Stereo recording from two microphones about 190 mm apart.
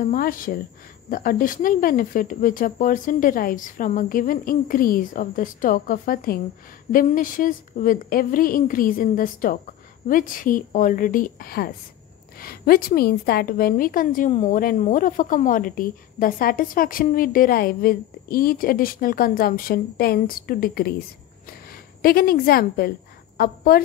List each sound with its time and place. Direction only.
0.0 s speech: 45° left (ahead or behind)
22.0 s a woman's voice: 50° left (ahead or behind)